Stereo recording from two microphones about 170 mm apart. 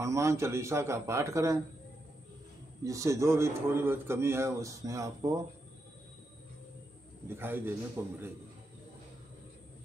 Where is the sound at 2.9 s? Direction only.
15° right (ahead or behind).